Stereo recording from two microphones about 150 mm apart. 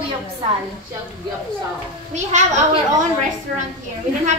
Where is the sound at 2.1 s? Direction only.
50° right (ahead or behind).